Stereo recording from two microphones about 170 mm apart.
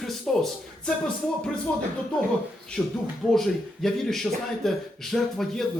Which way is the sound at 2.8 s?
5° left (ahead or behind).